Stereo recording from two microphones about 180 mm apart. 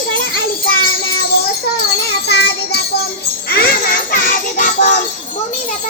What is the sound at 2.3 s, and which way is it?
Music, 65° left (ahead or behind).